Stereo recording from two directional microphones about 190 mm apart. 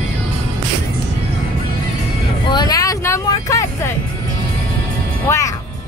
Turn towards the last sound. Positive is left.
turn(degrees=15)  # may be behind; listen again after turning